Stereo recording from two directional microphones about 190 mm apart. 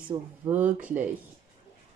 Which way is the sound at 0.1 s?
25° right (ahead or behind).